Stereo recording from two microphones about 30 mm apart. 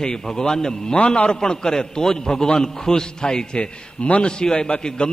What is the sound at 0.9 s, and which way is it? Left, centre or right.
Speech, left.